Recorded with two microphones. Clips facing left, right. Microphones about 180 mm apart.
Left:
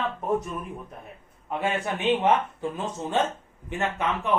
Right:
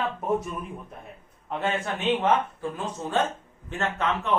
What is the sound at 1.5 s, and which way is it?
Speech, 10° left (ahead or behind).